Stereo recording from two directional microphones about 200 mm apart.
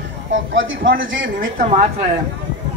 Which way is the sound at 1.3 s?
40° right (ahead or behind).